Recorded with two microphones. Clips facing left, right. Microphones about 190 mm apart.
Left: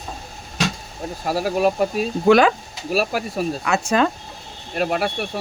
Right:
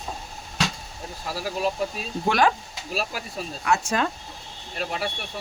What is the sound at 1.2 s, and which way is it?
Speech, 60° left (ahead or behind).